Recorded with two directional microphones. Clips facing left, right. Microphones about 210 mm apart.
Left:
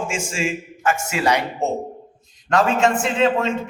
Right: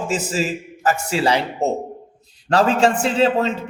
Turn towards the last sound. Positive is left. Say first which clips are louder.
# right 1 dB
turn(degrees=-35)  # may be behind; listen again after turning